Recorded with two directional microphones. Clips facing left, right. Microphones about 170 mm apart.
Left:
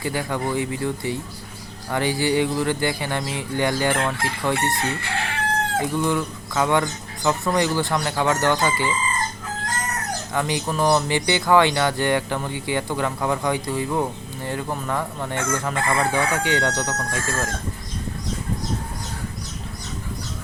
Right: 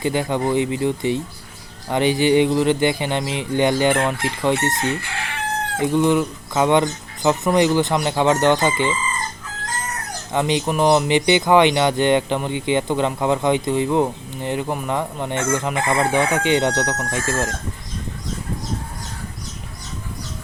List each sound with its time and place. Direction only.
0.0 s speech: 20° right (ahead or behind)
10.3 s speech: 20° right (ahead or behind)